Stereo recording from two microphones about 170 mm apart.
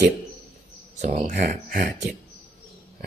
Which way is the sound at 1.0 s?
50° right (ahead or behind).